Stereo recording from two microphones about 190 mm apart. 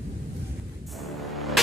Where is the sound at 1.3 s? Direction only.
Centre (ahead or behind).